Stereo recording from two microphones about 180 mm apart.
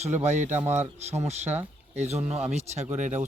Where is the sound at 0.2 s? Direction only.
40° right (ahead or behind).